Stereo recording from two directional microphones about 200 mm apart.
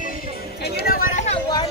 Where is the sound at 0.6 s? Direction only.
50° left (ahead or behind).